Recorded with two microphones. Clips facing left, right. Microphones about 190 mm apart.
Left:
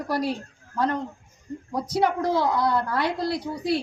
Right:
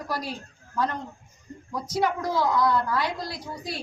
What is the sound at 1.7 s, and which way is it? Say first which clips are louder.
A woman's voice: left 3 dB; 60° left (ahead or behind).